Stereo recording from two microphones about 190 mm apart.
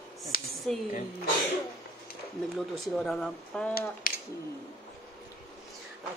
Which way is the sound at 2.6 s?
Centre (ahead or behind).